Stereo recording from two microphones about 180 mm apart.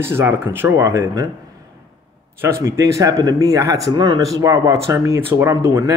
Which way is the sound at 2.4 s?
15° right (ahead or behind).